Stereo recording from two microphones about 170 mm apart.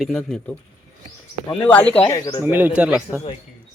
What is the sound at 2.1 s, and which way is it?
Speech, 20° left (ahead or behind).